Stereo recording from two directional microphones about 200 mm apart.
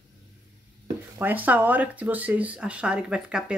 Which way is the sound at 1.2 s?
10° right (ahead or behind).